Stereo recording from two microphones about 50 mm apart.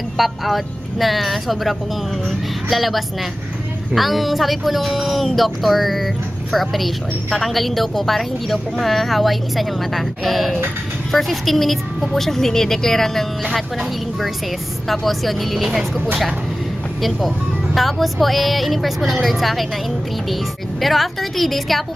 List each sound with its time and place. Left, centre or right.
0.2 s speech: centre
2.2 s a sound: centre
3.9 s speech: centre
14.9 s speech: centre
17.7 s speech: centre
20.8 s speech: centre